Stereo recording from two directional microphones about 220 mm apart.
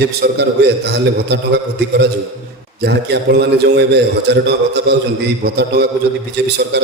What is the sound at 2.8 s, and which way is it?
A man's voice, 50° right (ahead or behind).